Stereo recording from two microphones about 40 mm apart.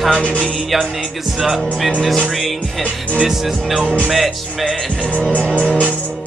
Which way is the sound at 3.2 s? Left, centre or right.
Centre.